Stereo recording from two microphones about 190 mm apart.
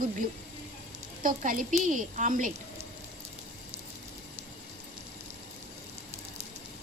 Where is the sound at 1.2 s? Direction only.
45° right (ahead or behind).